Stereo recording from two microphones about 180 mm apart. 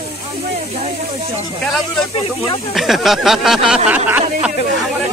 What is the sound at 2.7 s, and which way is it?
Speech, centre (ahead or behind).